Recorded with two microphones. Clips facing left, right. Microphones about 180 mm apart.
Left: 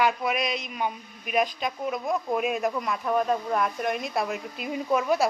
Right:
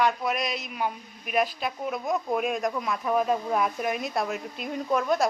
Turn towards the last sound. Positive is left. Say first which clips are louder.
# left 1 dB
turn(degrees=5)  # may be behind; listen again after turning